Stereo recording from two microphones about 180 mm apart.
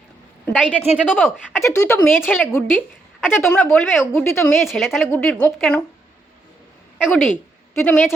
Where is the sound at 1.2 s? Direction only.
Centre (ahead or behind).